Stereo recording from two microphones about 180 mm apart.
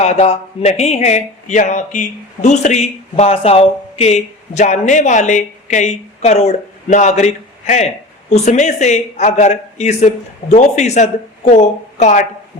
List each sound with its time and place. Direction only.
0.0 s a man's voice: 40° left (ahead or behind)